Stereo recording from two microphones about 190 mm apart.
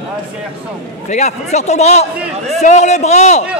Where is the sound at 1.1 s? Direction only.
35° left (ahead or behind).